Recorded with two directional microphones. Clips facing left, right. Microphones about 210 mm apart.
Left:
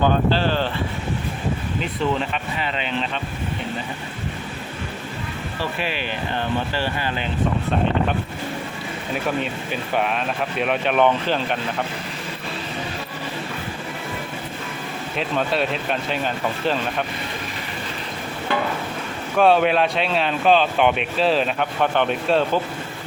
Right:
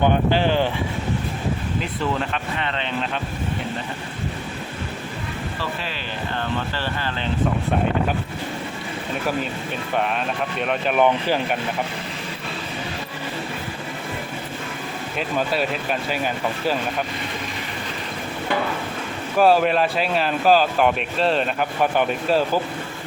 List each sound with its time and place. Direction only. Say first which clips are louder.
0.0 s speech: even; 15° right (ahead or behind)
2.1 s speech: even; 5° left (ahead or behind)
5.8 s speech: left 4 dB; 15° left (ahead or behind)
9.9 s speech: even; centre (ahead or behind)
15.2 s speech: left 1 dB; centre (ahead or behind)
19.4 s speech: even; centre (ahead or behind)